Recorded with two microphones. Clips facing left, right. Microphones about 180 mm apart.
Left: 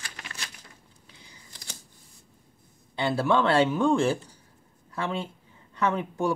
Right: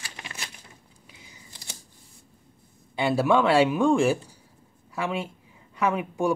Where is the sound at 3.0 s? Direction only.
15° right (ahead or behind).